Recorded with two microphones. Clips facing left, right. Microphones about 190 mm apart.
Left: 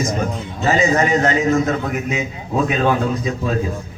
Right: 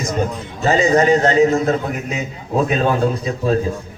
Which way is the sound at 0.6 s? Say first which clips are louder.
Right 2 dB; 35° right (ahead or behind).